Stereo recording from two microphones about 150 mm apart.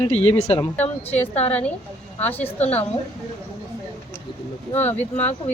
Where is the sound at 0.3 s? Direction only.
50° left (ahead or behind).